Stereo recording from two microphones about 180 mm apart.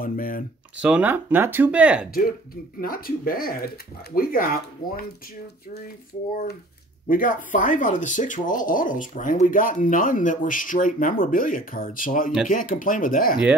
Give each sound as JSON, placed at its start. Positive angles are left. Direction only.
{"t": 0.0, "sound": "speech", "side_deg": 50}
{"t": 0.7, "sound": "speech", "side_deg": -5}
{"t": 2.0, "sound": "speech", "side_deg": 55}
{"t": 7.1, "sound": "speech", "side_deg": 50}